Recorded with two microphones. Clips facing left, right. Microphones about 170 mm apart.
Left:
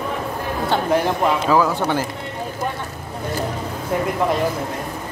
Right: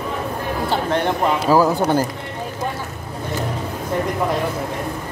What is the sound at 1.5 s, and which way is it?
Speech, 35° right (ahead or behind).